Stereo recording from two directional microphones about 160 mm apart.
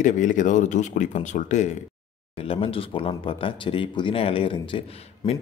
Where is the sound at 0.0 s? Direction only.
50° left (ahead or behind).